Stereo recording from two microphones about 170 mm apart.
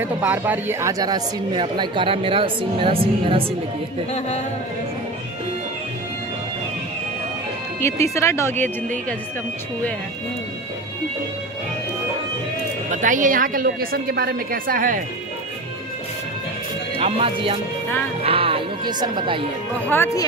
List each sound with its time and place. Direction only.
0.0 s speech: 10° right (ahead or behind); by 3.4 s 30° right (ahead or behind)
7.8 s speech: 15° left (ahead or behind)
12.9 s speech: 50° right (ahead or behind)
17.0 s speech: 35° right (ahead or behind)
19.9 s speech: 15° left (ahead or behind)